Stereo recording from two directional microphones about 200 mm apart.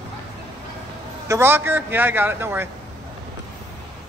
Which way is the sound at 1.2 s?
15° right (ahead or behind).